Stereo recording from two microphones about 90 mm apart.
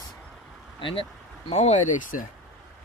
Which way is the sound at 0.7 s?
70° left (ahead or behind).